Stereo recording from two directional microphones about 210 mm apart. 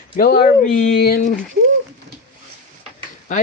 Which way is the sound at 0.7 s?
45° left (ahead or behind).